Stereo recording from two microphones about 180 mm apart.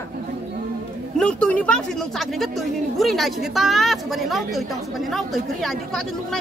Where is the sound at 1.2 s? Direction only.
5° left (ahead or behind).